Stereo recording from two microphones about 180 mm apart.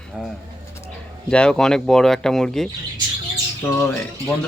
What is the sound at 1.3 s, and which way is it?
Speech, 5° left (ahead or behind).